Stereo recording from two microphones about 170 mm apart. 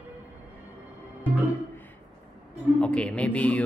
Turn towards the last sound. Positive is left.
turn(degrees=10)  # may be behind; listen again after turning